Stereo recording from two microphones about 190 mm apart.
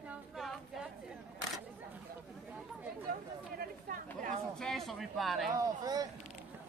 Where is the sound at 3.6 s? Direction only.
45° right (ahead or behind).